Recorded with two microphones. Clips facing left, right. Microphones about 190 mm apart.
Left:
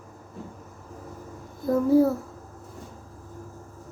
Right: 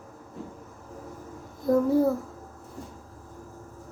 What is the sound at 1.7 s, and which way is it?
Speech, 5° left (ahead or behind).